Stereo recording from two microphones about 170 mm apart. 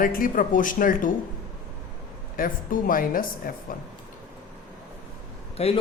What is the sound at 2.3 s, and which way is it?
A woman's voice, 55° left (ahead or behind).